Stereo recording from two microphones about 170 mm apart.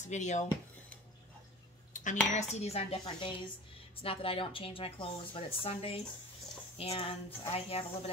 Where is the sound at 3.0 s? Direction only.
30° left (ahead or behind).